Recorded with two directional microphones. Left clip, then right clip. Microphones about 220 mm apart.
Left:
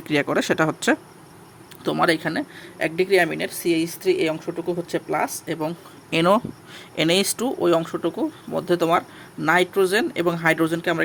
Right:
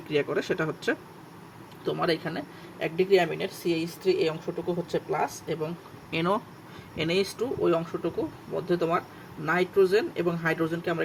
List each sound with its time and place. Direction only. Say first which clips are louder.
0.1 s speech: left 6 dB; 40° left (ahead or behind)